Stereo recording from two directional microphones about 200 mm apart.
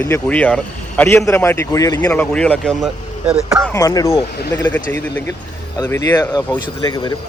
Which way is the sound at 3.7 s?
20° left (ahead or behind).